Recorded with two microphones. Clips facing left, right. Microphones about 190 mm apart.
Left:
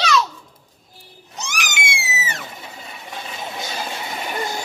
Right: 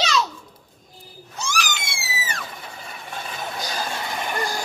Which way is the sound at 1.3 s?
20° left (ahead or behind).